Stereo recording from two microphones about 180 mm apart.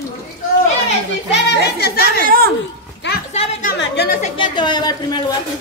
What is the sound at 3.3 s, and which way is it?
Speech, 35° left (ahead or behind).